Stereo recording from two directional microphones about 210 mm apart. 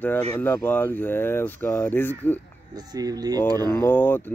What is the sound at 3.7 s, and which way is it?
Speech, 10° left (ahead or behind).